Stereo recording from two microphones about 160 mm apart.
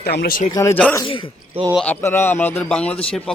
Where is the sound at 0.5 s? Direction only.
15° left (ahead or behind).